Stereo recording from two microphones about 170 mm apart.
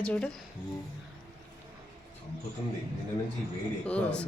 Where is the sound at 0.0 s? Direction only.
5° left (ahead or behind).